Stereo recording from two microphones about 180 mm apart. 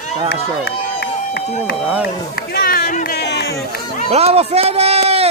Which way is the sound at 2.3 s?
60° left (ahead or behind).